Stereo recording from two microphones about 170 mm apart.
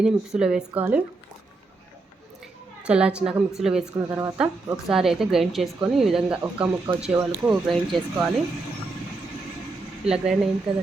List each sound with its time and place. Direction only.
0.0 s a woman's voice: 5° right (ahead or behind)
2.8 s a woman's voice: 5° right (ahead or behind)
4.1 s speech: 15° right (ahead or behind)
4.4 s a woman's voice: 5° right (ahead or behind)
10.1 s a woman's voice: 5° right (ahead or behind)